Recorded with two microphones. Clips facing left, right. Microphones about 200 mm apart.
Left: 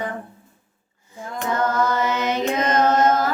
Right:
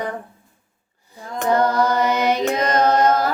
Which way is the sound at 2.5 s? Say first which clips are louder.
Right 1 dB; 35° right (ahead or behind).